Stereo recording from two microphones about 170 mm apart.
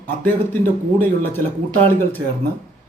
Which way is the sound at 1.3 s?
10° left (ahead or behind).